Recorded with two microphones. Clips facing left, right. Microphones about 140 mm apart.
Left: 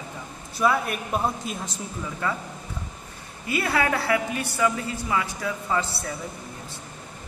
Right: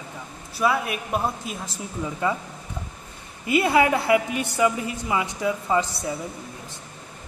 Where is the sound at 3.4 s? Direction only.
20° right (ahead or behind).